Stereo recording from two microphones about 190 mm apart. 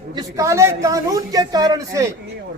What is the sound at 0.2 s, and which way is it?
A man's voice, 15° right (ahead or behind).